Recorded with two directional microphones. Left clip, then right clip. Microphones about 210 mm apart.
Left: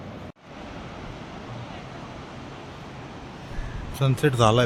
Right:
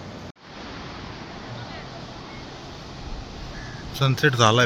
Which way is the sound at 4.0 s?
10° left (ahead or behind).